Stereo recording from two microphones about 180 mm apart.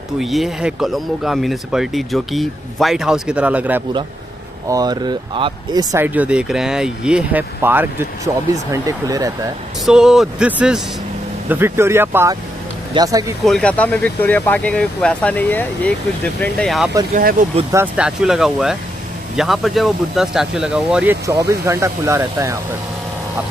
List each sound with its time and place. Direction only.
0.2 s speech: centre (ahead or behind)
4.6 s speech: 20° right (ahead or behind)
6.0 s speech: 10° right (ahead or behind)
9.8 s speech: 5° right (ahead or behind); by 13.2 s 20° right (ahead or behind)
13.5 s speech: 5° left (ahead or behind)
17.1 s speech: 50° right (ahead or behind)
17.9 s speech: 5° right (ahead or behind)